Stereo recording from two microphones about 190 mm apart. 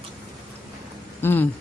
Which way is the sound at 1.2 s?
10° left (ahead or behind).